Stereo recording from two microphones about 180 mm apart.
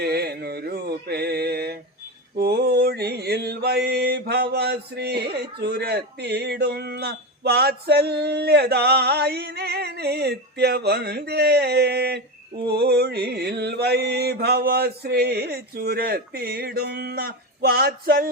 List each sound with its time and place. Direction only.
0.0 s mantra: 65° right (ahead or behind)